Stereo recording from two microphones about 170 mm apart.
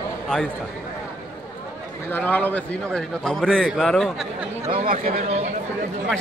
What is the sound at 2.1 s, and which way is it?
A man's voice, 10° left (ahead or behind).